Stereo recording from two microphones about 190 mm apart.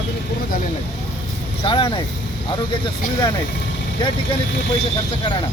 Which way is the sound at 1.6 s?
30° left (ahead or behind).